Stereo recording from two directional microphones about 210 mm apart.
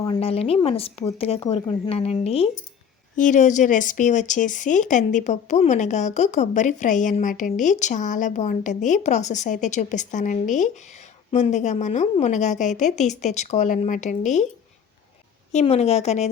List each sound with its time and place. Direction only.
0.2 s speech: 30° left (ahead or behind)
15.5 s speech: 30° left (ahead or behind)